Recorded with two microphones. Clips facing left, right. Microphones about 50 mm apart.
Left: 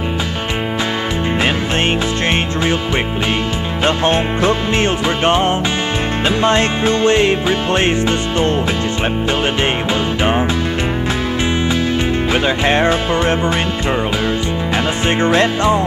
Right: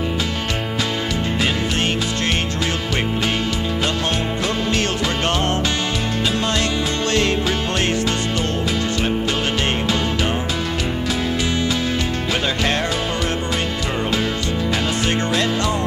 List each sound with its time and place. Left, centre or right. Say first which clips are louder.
3.8 s music: left 10 dB; left
12.3 s music: left 5 dB; left